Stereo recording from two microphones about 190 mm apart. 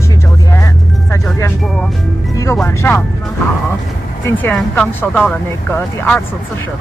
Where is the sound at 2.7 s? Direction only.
15° left (ahead or behind).